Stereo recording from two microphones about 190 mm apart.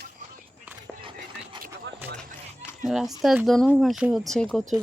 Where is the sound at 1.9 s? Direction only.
70° right (ahead or behind).